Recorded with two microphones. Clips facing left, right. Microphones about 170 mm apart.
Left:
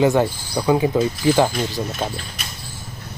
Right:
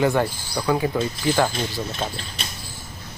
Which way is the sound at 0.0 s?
20° left (ahead or behind).